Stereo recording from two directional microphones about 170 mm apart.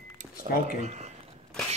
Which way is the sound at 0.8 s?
40° right (ahead or behind).